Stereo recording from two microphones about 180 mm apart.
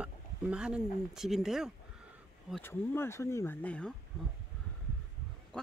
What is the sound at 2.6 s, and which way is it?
Speech, 15° left (ahead or behind).